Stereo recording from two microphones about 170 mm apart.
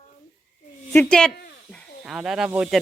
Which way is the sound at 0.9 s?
5° left (ahead or behind).